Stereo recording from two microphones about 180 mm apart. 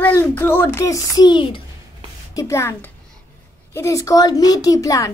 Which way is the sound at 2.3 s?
15° left (ahead or behind).